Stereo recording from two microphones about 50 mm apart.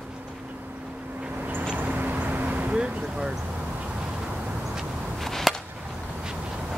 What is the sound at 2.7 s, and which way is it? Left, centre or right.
Vehicle, right.